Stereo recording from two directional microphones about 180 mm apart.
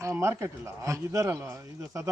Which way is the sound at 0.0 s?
15° right (ahead or behind).